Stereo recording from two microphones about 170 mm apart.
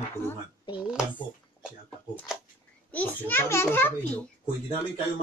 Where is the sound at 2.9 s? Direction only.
10° left (ahead or behind).